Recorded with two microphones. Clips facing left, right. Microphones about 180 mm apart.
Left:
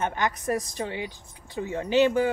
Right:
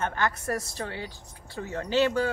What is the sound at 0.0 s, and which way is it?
Speech, 15° left (ahead or behind).